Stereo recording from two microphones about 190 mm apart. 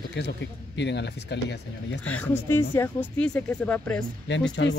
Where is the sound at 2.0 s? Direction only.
5° left (ahead or behind).